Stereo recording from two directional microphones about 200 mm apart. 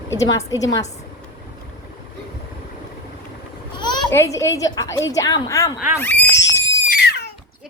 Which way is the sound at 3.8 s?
20° left (ahead or behind).